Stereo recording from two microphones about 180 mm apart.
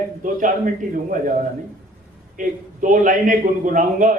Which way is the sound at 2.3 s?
45° right (ahead or behind).